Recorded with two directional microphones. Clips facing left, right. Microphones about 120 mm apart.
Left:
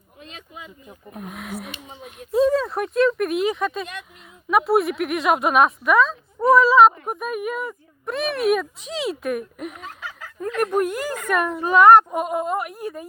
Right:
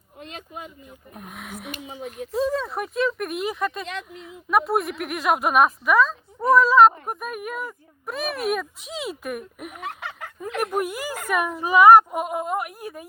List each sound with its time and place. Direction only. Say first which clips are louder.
0.2 s a sound: right 3 dB; 45° right (ahead or behind)
1.1 s speech: left 5 dB; centre (ahead or behind)
9.8 s snicker: right 3 dB; 60° right (ahead or behind)
10.6 s speech: left 4 dB; 10° right (ahead or behind)